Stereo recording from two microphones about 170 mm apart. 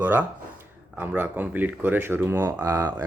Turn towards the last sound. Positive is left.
turn(degrees=-20)  # may be behind; listen again after turning